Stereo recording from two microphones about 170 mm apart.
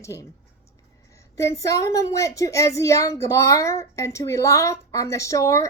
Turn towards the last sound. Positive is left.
turn(degrees=20)  # may be behind; listen again after turning